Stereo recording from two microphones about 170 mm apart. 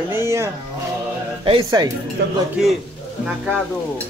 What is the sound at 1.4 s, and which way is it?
Speech, 30° right (ahead or behind).